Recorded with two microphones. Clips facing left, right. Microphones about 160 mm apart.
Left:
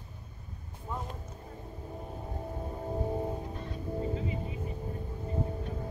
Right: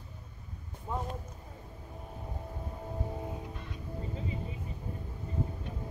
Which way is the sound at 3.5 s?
35° left (ahead or behind).